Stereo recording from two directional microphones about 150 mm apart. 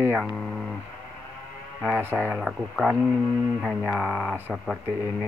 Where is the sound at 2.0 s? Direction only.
15° right (ahead or behind).